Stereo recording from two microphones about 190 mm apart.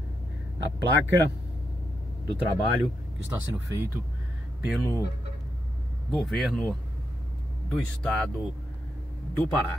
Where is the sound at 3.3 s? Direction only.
10° right (ahead or behind).